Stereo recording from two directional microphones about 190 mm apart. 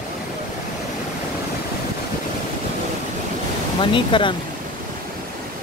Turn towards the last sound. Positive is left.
turn(degrees=25)  # may be behind; listen again after turning